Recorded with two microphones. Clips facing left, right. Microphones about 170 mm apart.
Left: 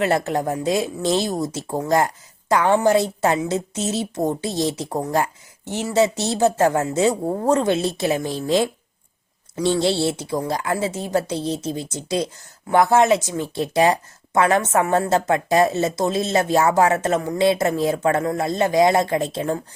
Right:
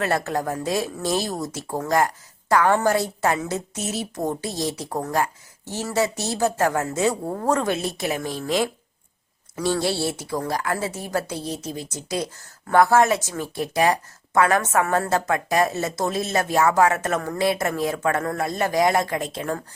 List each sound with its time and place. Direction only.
0.0 s speech: 20° left (ahead or behind)